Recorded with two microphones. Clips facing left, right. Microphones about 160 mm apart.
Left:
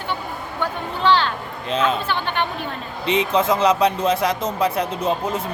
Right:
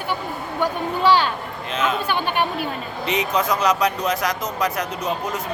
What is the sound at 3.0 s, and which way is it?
Speech, 30° left (ahead or behind).